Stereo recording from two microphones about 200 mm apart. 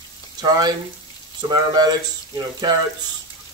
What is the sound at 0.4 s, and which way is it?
Speech, 20° right (ahead or behind).